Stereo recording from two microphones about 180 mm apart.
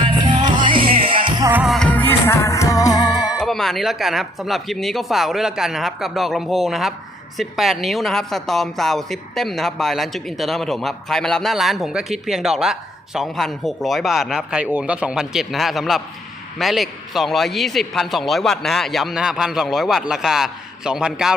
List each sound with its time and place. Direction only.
0.4 s music: 25° right (ahead or behind)
1.6 s music: 5° left (ahead or behind); by 3.4 s 20° left (ahead or behind)
3.4 s a woman's voice: centre (ahead or behind)